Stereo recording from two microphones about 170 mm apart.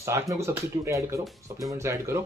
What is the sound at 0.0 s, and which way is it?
Speech, 15° right (ahead or behind).